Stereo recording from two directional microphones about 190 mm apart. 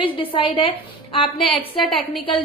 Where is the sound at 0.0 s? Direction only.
25° left (ahead or behind).